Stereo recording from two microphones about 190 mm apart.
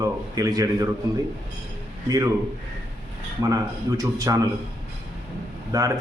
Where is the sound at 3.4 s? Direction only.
20° right (ahead or behind).